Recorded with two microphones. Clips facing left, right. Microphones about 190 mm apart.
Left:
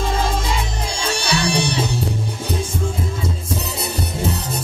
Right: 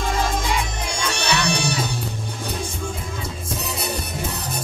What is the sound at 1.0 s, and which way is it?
Music, 30° left (ahead or behind).